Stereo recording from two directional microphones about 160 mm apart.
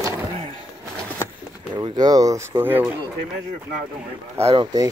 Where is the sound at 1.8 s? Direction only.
25° right (ahead or behind).